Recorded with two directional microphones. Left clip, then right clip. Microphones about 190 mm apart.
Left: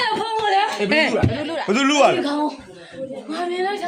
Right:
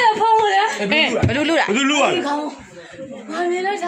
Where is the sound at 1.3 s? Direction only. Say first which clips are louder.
Right 8 dB; 60° right (ahead or behind).